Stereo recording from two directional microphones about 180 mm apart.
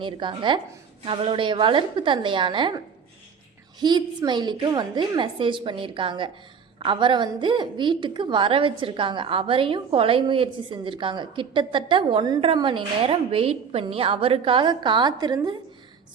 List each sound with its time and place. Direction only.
0.0 s a woman's voice: 25° right (ahead or behind)